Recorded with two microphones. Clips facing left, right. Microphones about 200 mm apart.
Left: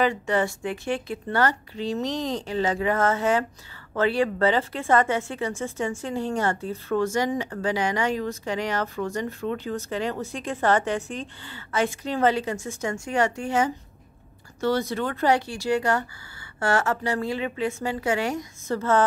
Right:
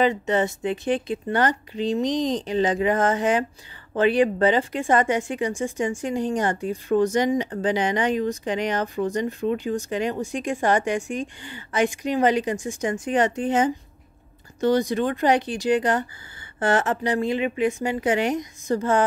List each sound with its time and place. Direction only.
0.0 s speech: 20° right (ahead or behind)